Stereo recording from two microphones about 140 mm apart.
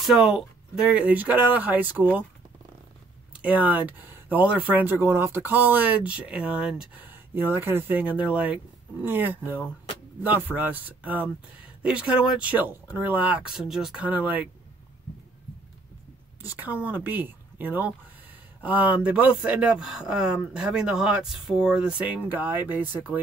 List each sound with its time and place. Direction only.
0.0 s speech: centre (ahead or behind)
0.8 s speech: 10° right (ahead or behind)
3.3 s speech: 10° right (ahead or behind)
16.5 s speech: 10° right (ahead or behind)